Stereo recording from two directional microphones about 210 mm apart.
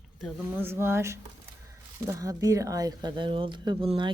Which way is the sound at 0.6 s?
10° right (ahead or behind).